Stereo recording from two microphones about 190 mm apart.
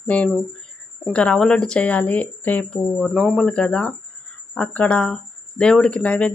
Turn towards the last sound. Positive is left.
turn(degrees=5)  # may be behind; listen again after turning